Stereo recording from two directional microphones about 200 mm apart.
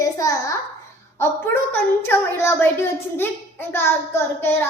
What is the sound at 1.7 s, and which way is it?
A woman's voice, 10° left (ahead or behind).